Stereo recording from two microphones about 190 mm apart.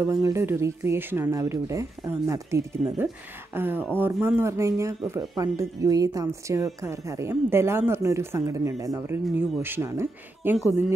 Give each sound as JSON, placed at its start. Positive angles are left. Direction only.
{"t": 0.0, "sound": "a woman's voice", "side_deg": -15}